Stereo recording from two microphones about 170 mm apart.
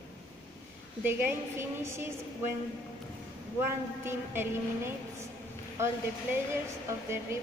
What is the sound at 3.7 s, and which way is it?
Speech, 15° right (ahead or behind).